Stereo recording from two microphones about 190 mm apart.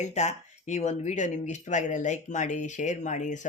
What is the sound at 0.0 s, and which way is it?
Speech, 35° left (ahead or behind).